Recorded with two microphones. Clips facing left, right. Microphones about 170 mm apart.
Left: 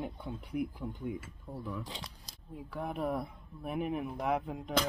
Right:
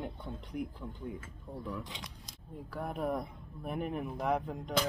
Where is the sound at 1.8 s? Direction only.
35° left (ahead or behind).